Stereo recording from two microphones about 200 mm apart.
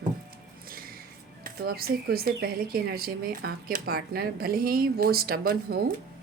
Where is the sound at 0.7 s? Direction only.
45° right (ahead or behind).